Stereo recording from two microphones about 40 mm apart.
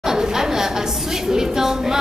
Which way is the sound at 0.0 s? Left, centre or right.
Centre.